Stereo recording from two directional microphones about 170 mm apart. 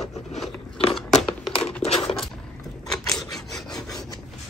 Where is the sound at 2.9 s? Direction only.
5° left (ahead or behind).